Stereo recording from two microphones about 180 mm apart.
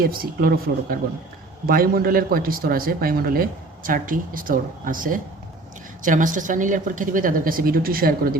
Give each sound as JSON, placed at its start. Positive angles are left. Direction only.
{"t": 0.0, "sound": "a man's voice", "side_deg": -55}